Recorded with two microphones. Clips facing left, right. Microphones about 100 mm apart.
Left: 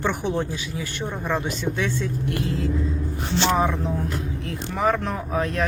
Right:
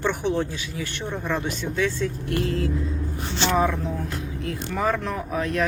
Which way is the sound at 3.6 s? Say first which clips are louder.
Left 1 dB; 25° left (ahead or behind).